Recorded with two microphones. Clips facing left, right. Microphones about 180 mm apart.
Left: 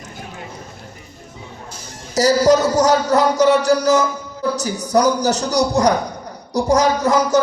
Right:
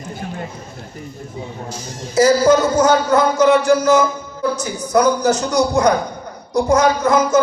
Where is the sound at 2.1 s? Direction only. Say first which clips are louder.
Right 1 dB; 40° left (ahead or behind).